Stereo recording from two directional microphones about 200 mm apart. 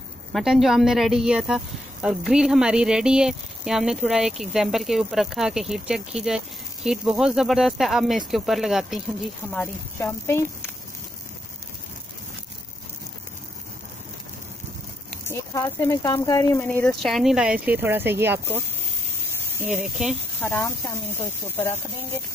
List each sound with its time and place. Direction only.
0.3 s speech: centre (ahead or behind)
9.5 s speech: 10° left (ahead or behind)
15.2 s speech: 15° left (ahead or behind)
16.6 s speech: 5° left (ahead or behind); by 18.4 s 10° right (ahead or behind)
19.6 s speech: 5° right (ahead or behind)
20.3 s speech: 10° left (ahead or behind)